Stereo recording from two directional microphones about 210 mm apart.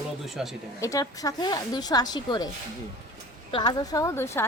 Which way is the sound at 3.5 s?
20° left (ahead or behind).